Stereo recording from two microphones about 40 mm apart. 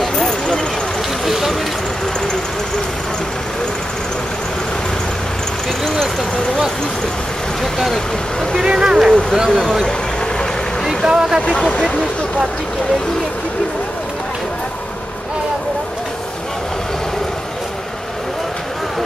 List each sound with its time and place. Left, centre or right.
0.0 s a sound: centre
8.6 s speech: centre
11.1 s speech: centre